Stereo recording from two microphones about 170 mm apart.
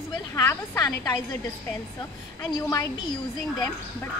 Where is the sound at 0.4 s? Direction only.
20° left (ahead or behind).